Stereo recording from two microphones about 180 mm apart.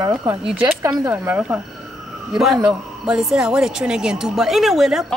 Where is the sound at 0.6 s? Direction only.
10° right (ahead or behind).